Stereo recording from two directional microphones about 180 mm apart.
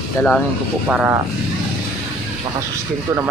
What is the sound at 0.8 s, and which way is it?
Speech, 10° right (ahead or behind).